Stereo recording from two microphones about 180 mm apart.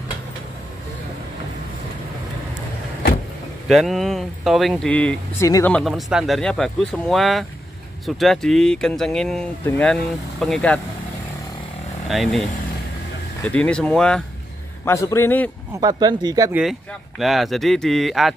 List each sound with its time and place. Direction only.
3.6 s a man's voice: centre (ahead or behind); by 5.8 s 15° left (ahead or behind)
5.8 s speech: centre (ahead or behind)
12.1 s speech: centre (ahead or behind)
14.9 s a man's voice: 15° left (ahead or behind)
15.8 s speech: 25° right (ahead or behind)
17.2 s speech: centre (ahead or behind)